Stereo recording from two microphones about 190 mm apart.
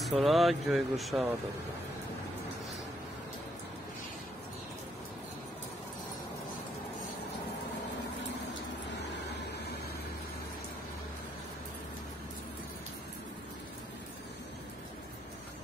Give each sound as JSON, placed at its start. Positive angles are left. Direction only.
{"t": 0.0, "sound": "speech", "side_deg": 0}